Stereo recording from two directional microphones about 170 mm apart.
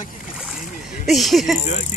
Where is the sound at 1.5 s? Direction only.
45° left (ahead or behind).